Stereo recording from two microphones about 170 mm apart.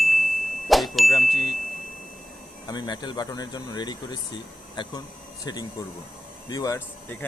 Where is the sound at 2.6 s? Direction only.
25° left (ahead or behind).